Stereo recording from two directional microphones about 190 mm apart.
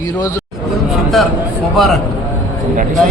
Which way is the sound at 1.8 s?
Centre (ahead or behind).